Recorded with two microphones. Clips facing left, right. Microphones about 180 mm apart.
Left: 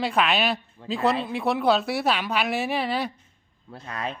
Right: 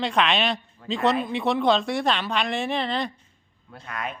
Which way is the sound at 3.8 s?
30° left (ahead or behind).